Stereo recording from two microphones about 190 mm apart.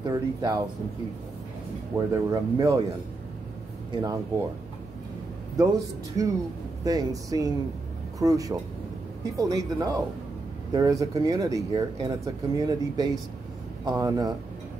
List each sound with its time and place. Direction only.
0.1 s speech: 20° right (ahead or behind)
2.0 s speech: 15° right (ahead or behind)
3.9 s speech: 20° right (ahead or behind)
6.2 s speech: 20° right (ahead or behind)